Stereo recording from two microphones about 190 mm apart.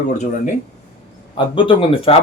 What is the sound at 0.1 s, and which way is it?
Speech, 40° left (ahead or behind).